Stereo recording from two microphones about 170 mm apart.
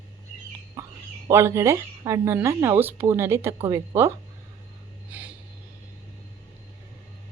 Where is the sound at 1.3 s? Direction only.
15° right (ahead or behind).